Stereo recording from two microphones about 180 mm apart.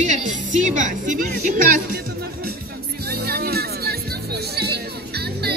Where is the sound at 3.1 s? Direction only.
60° right (ahead or behind).